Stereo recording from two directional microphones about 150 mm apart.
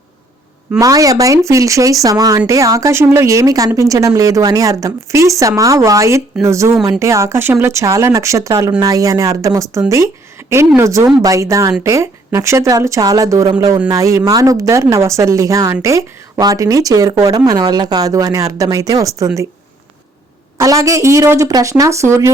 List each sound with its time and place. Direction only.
0.8 s speech: 25° right (ahead or behind)
20.6 s speech: 25° right (ahead or behind)